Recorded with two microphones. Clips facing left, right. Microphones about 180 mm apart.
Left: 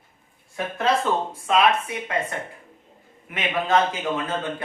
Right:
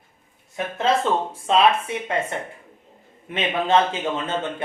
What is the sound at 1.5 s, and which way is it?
Speech, 30° right (ahead or behind).